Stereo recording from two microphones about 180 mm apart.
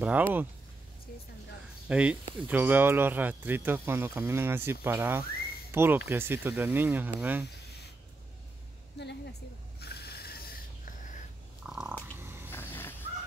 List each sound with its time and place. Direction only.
0.0 s speech: 10° right (ahead or behind)
1.9 s speech: 5° right (ahead or behind)
8.9 s a woman's voice: 70° left (ahead or behind)
9.8 s ratchet: 60° left (ahead or behind)
11.6 s frog: 5° right (ahead or behind)
12.2 s a sound: 15° right (ahead or behind)
12.4 s vehicle: 10° left (ahead or behind)